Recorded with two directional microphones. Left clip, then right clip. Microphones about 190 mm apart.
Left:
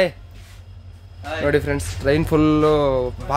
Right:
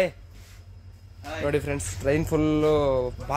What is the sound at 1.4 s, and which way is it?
Speech, 10° left (ahead or behind).